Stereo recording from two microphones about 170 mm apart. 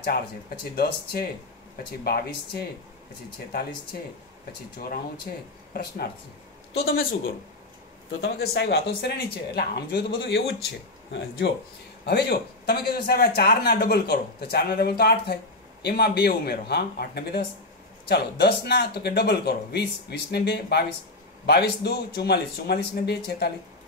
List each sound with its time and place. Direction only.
0.7 s speech: 65° left (ahead or behind)
4.7 s speech: 60° left (ahead or behind)
8.2 s speech: 75° left (ahead or behind)